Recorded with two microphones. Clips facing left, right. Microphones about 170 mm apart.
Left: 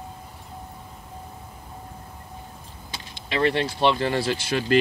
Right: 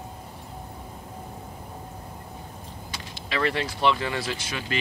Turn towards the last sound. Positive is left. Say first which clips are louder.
# left 8 dB
turn(degrees=35)  # may be behind; listen again after turning